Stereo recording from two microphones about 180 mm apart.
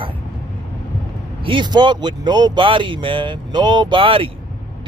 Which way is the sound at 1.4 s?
25° right (ahead or behind).